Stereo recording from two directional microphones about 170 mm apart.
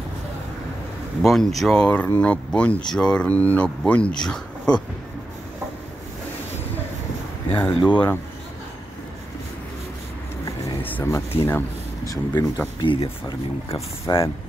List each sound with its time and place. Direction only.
1.2 s speech: centre (ahead or behind)
7.8 s speech: 10° left (ahead or behind)
10.4 s a sound: 10° left (ahead or behind)
12.1 s speech: 20° left (ahead or behind)
14.1 s speech: 25° left (ahead or behind)